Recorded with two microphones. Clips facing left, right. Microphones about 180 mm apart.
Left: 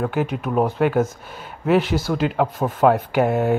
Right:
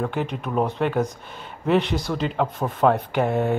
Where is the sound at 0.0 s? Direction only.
5° left (ahead or behind).